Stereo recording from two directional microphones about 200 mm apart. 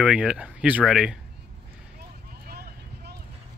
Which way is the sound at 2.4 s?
50° right (ahead or behind).